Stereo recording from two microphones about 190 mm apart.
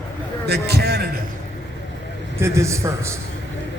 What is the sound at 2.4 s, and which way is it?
Speech, 15° right (ahead or behind).